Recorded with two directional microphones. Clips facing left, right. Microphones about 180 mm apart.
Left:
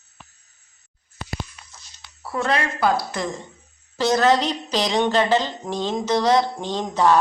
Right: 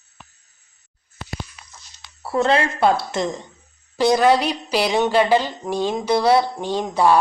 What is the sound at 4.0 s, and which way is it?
A woman's voice, 10° right (ahead or behind).